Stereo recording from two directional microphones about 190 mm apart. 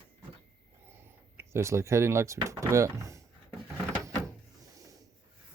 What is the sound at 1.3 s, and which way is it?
Speech, 15° right (ahead or behind).